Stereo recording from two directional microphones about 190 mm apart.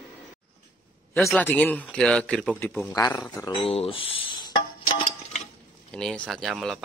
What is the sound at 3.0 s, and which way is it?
Speech, 15° left (ahead or behind).